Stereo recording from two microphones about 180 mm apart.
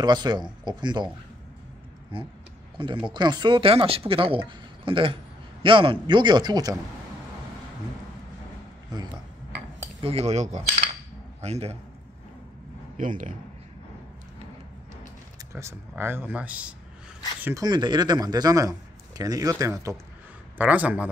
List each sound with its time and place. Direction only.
0.0 s speech: 25° right (ahead or behind)
2.1 s speech: 30° right (ahead or behind)
9.9 s cutlery: 35° right (ahead or behind)
11.4 s a man's voice: 35° right (ahead or behind)
12.9 s speech: 45° right (ahead or behind)
15.5 s speech: 15° right (ahead or behind)
17.6 s speech: 25° right (ahead or behind)
20.5 s speech: 10° right (ahead or behind)